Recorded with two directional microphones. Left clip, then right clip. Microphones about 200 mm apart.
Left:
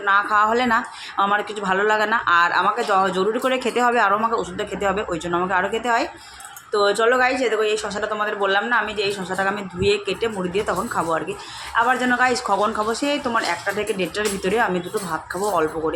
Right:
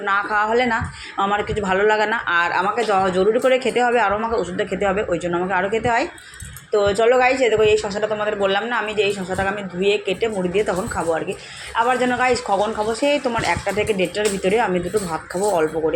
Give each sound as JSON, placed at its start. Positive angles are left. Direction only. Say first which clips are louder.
{"t": 0.0, "sound": "speech", "louder": "left 2 dB", "side_deg": 0}